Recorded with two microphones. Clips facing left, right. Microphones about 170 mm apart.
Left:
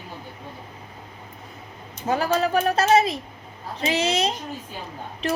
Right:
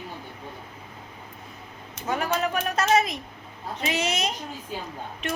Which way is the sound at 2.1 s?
35° left (ahead or behind).